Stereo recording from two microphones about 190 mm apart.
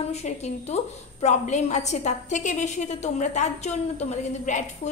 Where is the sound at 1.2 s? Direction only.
40° left (ahead or behind).